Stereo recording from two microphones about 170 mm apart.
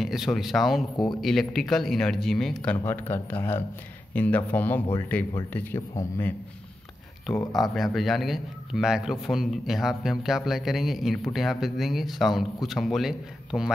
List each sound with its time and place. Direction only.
0.0 s a man's voice: centre (ahead or behind)
0.9 s speech: 25° left (ahead or behind)
1.2 s a man's voice: centre (ahead or behind)
7.2 s a man's voice: centre (ahead or behind)